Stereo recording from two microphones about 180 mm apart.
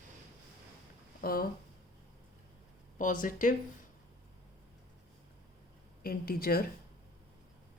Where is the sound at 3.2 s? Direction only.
45° left (ahead or behind).